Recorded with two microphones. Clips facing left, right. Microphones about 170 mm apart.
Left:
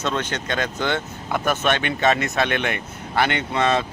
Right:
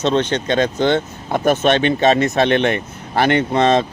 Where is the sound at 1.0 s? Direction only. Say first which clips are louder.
Right 5 dB; 45° right (ahead or behind).